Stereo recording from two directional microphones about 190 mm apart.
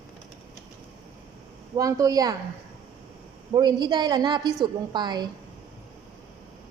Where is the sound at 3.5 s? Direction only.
20° right (ahead or behind).